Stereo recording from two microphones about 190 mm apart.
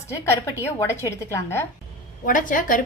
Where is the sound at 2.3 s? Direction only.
45° left (ahead or behind).